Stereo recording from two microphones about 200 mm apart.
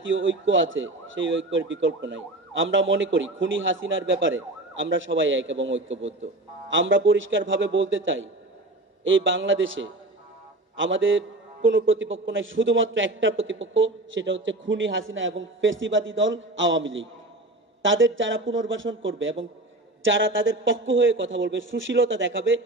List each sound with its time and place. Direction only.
0.0 s speech: 70° right (ahead or behind)